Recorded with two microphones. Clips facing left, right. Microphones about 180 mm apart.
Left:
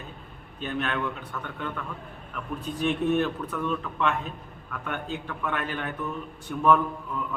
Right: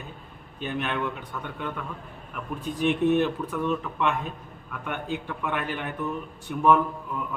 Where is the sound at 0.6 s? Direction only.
15° right (ahead or behind).